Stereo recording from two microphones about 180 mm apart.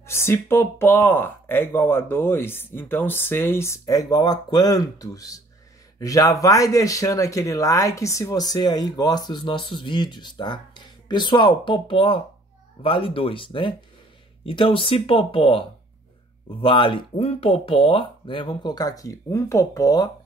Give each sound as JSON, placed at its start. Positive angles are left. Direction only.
{"t": 0.0, "sound": "speech", "side_deg": 15}